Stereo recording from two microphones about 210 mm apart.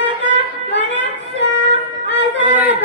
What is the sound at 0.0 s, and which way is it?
Music, 60° right (ahead or behind).